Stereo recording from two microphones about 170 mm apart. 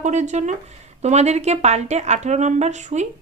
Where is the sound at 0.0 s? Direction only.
45° right (ahead or behind).